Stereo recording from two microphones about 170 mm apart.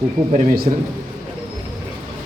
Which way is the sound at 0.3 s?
60° right (ahead or behind).